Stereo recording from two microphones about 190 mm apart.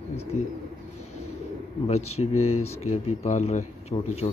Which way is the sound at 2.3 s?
90° left.